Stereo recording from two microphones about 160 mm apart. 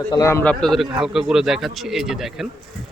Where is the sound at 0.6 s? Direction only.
Centre (ahead or behind).